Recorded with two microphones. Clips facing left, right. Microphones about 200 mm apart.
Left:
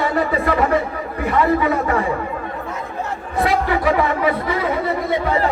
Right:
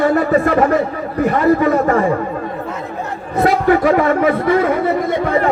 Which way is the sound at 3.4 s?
45° right (ahead or behind).